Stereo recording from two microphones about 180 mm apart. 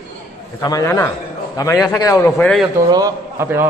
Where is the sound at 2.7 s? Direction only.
20° right (ahead or behind).